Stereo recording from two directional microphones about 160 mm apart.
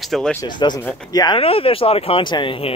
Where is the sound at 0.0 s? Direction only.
Centre (ahead or behind).